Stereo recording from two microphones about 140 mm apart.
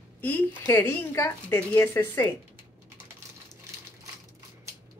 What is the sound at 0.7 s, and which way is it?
A woman's voice, 20° left (ahead or behind).